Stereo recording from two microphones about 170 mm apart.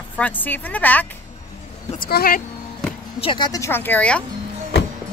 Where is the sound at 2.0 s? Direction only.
60° left (ahead or behind).